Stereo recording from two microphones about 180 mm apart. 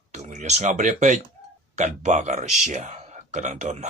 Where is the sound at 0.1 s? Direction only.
40° right (ahead or behind).